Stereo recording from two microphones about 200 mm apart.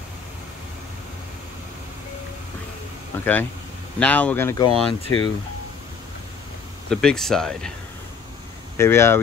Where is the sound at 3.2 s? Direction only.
10° left (ahead or behind).